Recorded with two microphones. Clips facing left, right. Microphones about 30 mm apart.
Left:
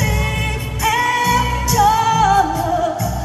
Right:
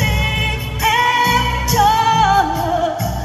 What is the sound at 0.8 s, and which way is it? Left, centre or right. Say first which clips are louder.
Music: right 2 dB; centre.